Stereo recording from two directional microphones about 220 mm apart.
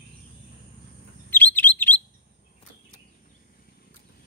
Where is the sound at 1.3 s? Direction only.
10° left (ahead or behind).